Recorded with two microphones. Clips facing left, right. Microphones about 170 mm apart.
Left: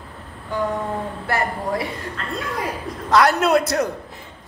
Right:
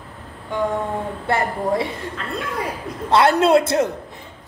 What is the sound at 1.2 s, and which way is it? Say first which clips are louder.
Speech: right 3 dB; 25° right (ahead or behind).